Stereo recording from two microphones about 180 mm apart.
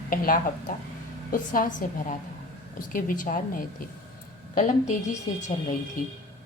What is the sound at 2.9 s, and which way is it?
A woman's voice, 50° left (ahead or behind).